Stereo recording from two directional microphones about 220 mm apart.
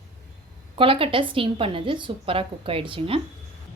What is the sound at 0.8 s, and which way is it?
A woman's voice, 25° right (ahead or behind).